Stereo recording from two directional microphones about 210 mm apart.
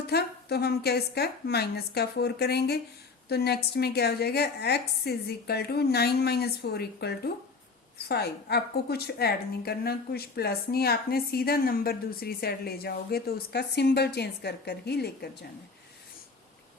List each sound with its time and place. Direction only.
0.1 s a woman's voice: 50° left (ahead or behind)